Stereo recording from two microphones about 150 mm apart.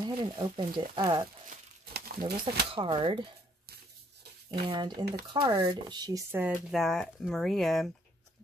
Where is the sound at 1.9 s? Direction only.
90° right.